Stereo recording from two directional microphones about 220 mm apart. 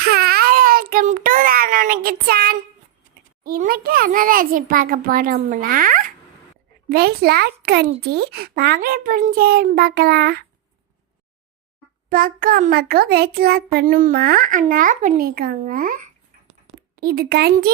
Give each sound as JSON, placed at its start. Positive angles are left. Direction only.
{"t": 0.0, "sound": "a sound", "side_deg": -45}
{"t": 3.4, "sound": "a child's voice", "side_deg": -40}
{"t": 12.0, "sound": "a child's voice", "side_deg": -40}